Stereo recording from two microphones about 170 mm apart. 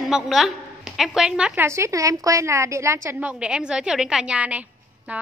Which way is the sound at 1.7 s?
15° right (ahead or behind).